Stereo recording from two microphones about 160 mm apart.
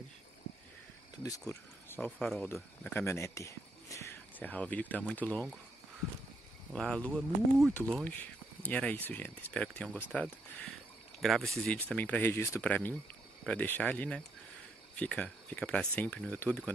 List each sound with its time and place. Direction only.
1.5 s speech: 15° left (ahead or behind)
1.9 s speech: 5° left (ahead or behind)
2.4 s speech: 15° left (ahead or behind)
6.7 s speech: 5° left (ahead or behind)
9.8 s speech: 10° right (ahead or behind)
11.1 s speech: centre (ahead or behind)